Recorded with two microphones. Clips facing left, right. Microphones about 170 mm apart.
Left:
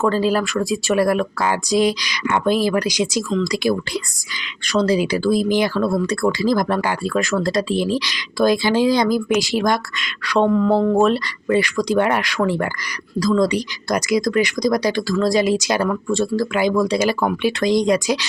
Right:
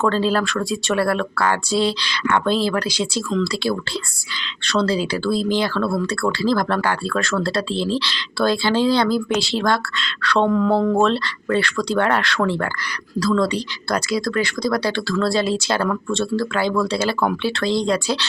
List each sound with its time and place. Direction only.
0.0 s speech: 10° left (ahead or behind)